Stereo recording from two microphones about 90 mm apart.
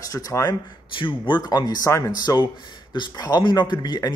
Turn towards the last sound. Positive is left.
turn(degrees=50)  # may be behind; listen again after turning